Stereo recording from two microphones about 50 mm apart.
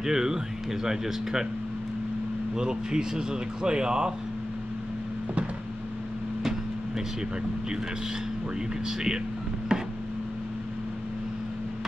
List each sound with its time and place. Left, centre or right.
0.0 s speech: centre
2.5 s speech: centre
8.8 s speech: centre
9.7 s a sound: centre